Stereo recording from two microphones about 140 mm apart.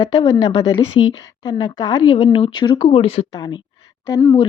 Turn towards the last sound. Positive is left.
turn(degrees=25)  # may be behind; listen again after turning